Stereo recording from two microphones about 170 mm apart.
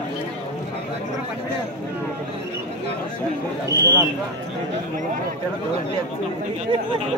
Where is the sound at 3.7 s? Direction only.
20° right (ahead or behind).